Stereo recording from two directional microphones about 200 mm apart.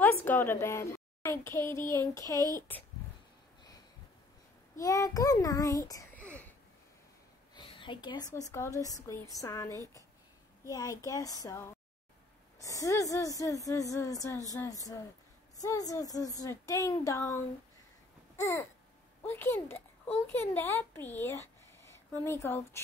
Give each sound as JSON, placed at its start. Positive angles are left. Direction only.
{"t": 0.0, "sound": "a woman's voice", "side_deg": 10}
{"t": 4.7, "sound": "a child's voice", "side_deg": 15}
{"t": 7.5, "sound": "speech", "side_deg": 20}
{"t": 18.3, "sound": "babbling", "side_deg": 15}
{"t": 19.2, "sound": "a woman's voice", "side_deg": 10}